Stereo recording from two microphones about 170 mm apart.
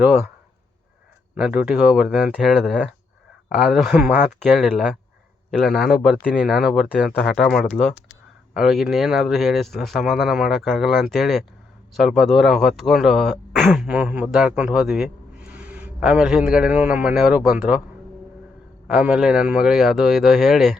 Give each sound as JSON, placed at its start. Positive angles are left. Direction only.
{"t": 0.0, "sound": "speech", "side_deg": -10}
{"t": 1.4, "sound": "speech", "side_deg": -5}
{"t": 18.9, "sound": "speech", "side_deg": 0}